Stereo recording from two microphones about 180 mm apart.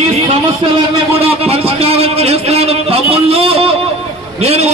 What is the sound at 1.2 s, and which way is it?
A man's voice, 35° right (ahead or behind).